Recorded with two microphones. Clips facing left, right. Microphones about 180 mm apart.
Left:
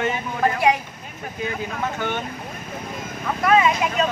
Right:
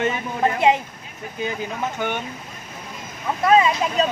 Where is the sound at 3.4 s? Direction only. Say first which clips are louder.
Right 1 dB; 30° right (ahead or behind).